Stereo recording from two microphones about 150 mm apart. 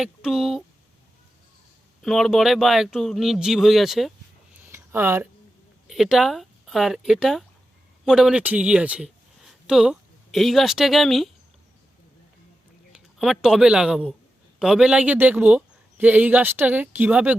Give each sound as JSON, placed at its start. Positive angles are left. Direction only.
{"t": 0.0, "sound": "speech", "side_deg": -5}
{"t": 2.0, "sound": "speech", "side_deg": 0}
{"t": 4.6, "sound": "a sound", "side_deg": -15}
{"t": 5.9, "sound": "speech", "side_deg": 0}
{"t": 12.9, "sound": "speech", "side_deg": 0}